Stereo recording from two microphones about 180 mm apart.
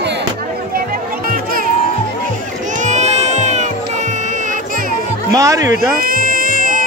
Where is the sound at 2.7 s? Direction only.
40° right (ahead or behind).